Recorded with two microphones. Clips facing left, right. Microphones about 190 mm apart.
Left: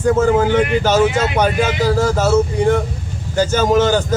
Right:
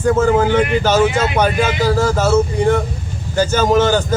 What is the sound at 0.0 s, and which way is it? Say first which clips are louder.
A man's voice: even; 20° left (ahead or behind).